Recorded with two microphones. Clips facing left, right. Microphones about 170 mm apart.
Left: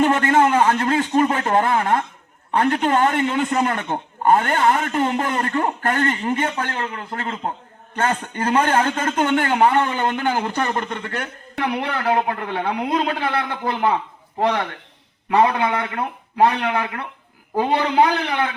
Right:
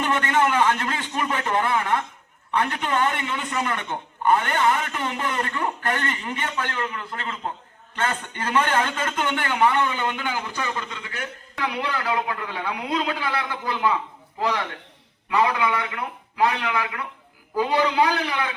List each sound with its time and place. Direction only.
0.0 s a man's voice: 40° left (ahead or behind); by 11.3 s 60° left (ahead or behind)
11.5 s speech: 30° left (ahead or behind)
12.8 s a man's voice: 50° left (ahead or behind); by 18.4 s 30° left (ahead or behind)